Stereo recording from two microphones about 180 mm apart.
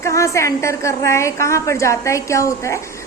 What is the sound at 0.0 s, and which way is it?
A woman's voice, 15° left (ahead or behind).